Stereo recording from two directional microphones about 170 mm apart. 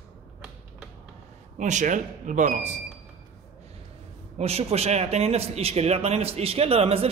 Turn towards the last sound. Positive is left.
turn(degrees=-35)  # may be behind; listen again after turning